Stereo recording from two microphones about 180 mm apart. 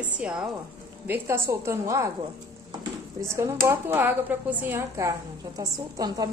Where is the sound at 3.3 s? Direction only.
15° right (ahead or behind).